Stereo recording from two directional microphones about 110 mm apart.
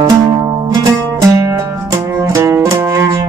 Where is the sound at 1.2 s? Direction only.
30° right (ahead or behind).